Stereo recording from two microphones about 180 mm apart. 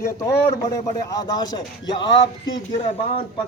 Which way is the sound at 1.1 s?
20° left (ahead or behind).